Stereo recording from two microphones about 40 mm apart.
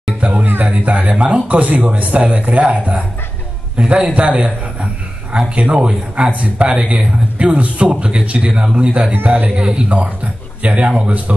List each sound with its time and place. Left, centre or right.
0.2 s music: right
0.7 s speech: right
4.0 s speech: right
5.5 s a man's voice: right
9.1 s speech: right
9.6 s a man's voice: right